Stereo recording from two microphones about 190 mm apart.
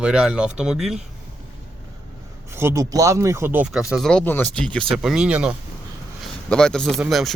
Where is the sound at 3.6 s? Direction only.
Centre (ahead or behind).